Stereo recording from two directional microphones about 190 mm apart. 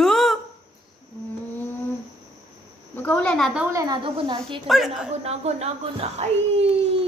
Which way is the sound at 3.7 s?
20° right (ahead or behind).